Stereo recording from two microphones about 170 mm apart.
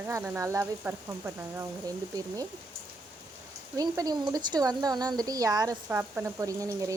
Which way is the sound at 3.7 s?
20° right (ahead or behind).